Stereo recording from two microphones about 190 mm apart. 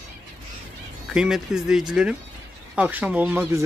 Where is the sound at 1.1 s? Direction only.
5° right (ahead or behind).